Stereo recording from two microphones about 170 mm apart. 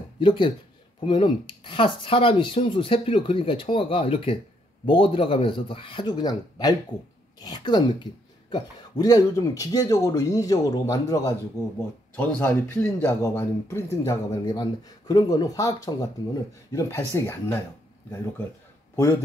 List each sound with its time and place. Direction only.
0.2 s speech: 30° left (ahead or behind)